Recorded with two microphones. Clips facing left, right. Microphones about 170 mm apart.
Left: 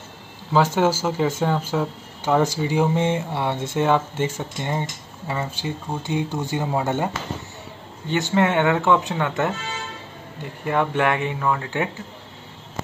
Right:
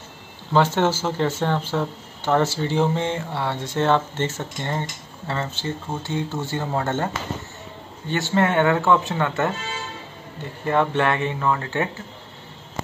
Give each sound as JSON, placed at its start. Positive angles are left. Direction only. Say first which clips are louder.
{"t": 0.5, "sound": "speech", "louder": "even", "side_deg": 5}
{"t": 3.8, "sound": "speech", "louder": "even", "side_deg": 10}
{"t": 8.1, "sound": "speech", "louder": "left 1 dB", "side_deg": 15}
{"t": 10.6, "sound": "speech", "louder": "right 1 dB", "side_deg": 10}